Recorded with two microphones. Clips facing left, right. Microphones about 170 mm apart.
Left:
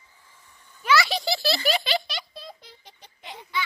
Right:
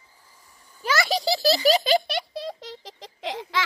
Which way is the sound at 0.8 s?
40° right (ahead or behind).